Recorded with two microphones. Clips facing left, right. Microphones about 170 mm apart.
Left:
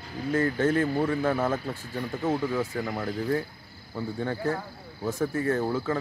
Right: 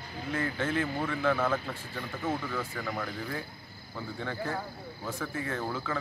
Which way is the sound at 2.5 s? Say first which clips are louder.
Left 6 dB; 25° left (ahead or behind).